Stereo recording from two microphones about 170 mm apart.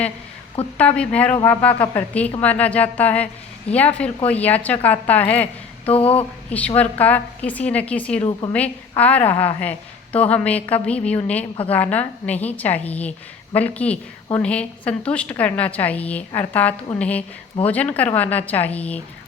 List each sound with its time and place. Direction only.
0.8 s a woman's voice: 10° left (ahead or behind)
5.8 s a sound: 35° left (ahead or behind)
6.5 s a woman's voice: 10° left (ahead or behind)
9.3 s a woman's voice: 20° left (ahead or behind)
9.6 s a woman's voice: 10° left (ahead or behind)